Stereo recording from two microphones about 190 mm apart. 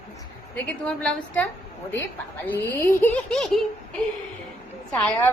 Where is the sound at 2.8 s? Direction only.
10° left (ahead or behind).